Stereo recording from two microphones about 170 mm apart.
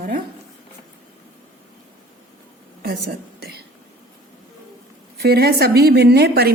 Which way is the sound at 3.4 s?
70° right (ahead or behind).